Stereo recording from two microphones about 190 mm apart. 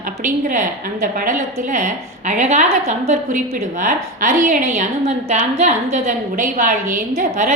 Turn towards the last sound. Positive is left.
turn(degrees=-45)  # may be behind; listen again after turning